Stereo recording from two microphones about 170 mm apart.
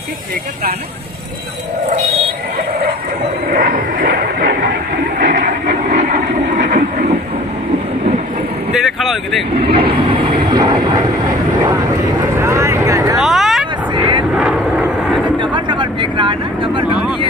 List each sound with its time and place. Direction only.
3.5 s a sound: 55° right (ahead or behind)
5.2 s vehicle: 50° right (ahead or behind)
8.7 s speech: centre (ahead or behind)
9.6 s vehicle: 35° right (ahead or behind)
13.2 s vehicle: centre (ahead or behind)
13.9 s vehicle: 30° right (ahead or behind)
14.3 s vehicle: 5° right (ahead or behind)
15.3 s vehicle: 30° right (ahead or behind)